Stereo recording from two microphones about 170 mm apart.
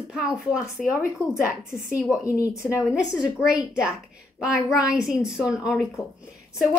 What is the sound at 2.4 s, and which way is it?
Speech, 15° left (ahead or behind).